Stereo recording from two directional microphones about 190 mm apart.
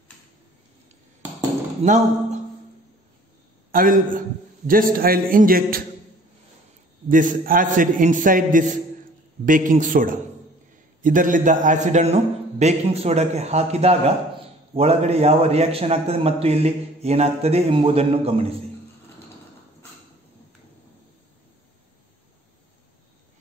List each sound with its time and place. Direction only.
1.8 s speech: 40° right (ahead or behind)
3.7 s a man's voice: 45° right (ahead or behind)
7.1 s a man's voice: 45° right (ahead or behind)